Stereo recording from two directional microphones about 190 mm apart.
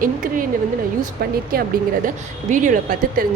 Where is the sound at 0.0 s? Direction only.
45° right (ahead or behind).